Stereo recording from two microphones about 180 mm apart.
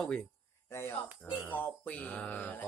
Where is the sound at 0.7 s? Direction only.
15° left (ahead or behind).